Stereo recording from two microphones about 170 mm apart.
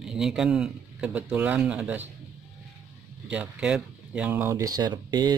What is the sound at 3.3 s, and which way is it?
Speech, 5° right (ahead or behind).